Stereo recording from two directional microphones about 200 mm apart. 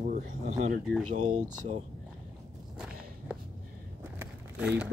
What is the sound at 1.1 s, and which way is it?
Speech, 40° right (ahead or behind).